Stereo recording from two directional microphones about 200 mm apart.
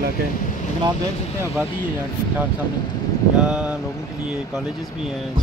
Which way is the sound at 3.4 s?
5° right (ahead or behind).